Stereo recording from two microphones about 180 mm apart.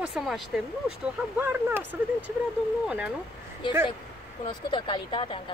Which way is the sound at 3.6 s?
25° left (ahead or behind).